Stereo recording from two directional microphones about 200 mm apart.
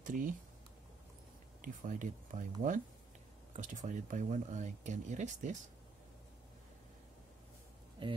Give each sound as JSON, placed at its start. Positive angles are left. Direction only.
{"t": 0.0, "sound": "speech", "side_deg": -40}
{"t": 1.6, "sound": "speech", "side_deg": -40}
{"t": 8.0, "sound": "speech", "side_deg": -25}